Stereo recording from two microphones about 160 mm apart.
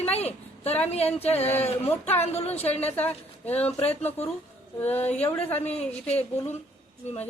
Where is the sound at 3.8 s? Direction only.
40° left (ahead or behind).